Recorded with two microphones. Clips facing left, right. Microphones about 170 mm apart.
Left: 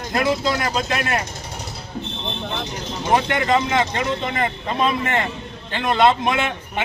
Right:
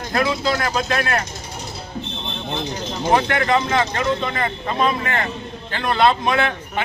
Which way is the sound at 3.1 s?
20° left (ahead or behind).